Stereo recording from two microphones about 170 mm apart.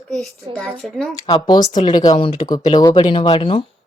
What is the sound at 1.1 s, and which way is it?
A woman's voice, 25° left (ahead or behind).